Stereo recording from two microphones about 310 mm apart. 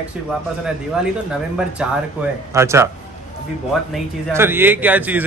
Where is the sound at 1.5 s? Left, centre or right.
Centre.